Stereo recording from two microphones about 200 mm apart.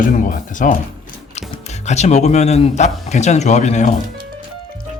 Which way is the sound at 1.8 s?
35° left (ahead or behind).